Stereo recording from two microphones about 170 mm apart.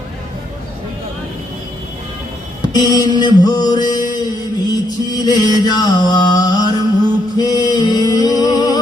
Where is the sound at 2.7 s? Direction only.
25° left (ahead or behind).